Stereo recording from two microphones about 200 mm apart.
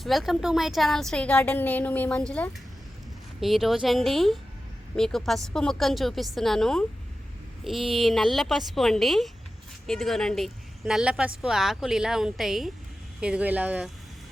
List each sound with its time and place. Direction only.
0.0 s a woman's voice: centre (ahead or behind)